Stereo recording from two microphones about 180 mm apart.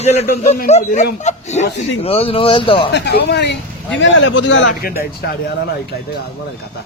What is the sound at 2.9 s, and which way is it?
A man's voice, 70° left (ahead or behind).